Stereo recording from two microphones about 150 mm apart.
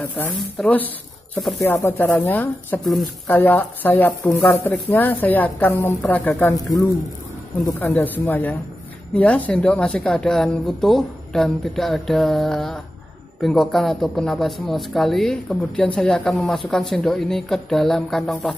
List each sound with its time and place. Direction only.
0.0 s a woman's voice: 10° left (ahead or behind)
6.5 s speech: 20° left (ahead or behind)
7.8 s a woman's voice: 10° left (ahead or behind)